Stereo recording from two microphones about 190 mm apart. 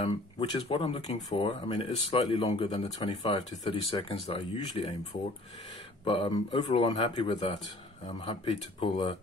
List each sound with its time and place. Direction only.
0.0 s speech: 35° left (ahead or behind)
8.7 s speech: 30° left (ahead or behind)